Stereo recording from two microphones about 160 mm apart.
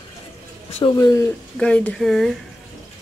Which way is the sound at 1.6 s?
5° left (ahead or behind).